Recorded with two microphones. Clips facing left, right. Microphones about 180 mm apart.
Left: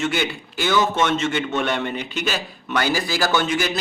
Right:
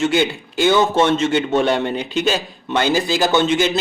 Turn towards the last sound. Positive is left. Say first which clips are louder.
# right 5 dB
turn(degrees=-25)  # may be behind; listen again after turning